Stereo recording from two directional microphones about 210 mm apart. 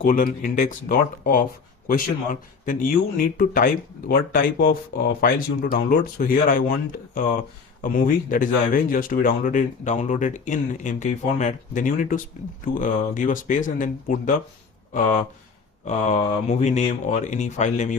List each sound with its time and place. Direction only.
0.0 s speech: 40° left (ahead or behind)
2.6 s speech: 40° left (ahead or behind)
15.8 s speech: 35° left (ahead or behind)